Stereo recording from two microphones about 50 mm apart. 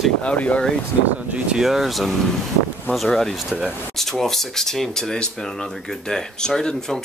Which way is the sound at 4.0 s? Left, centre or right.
Centre.